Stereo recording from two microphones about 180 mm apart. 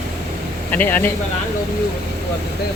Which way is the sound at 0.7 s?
10° left (ahead or behind).